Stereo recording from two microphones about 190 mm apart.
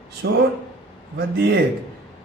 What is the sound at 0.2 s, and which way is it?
A man's voice, 65° right (ahead or behind).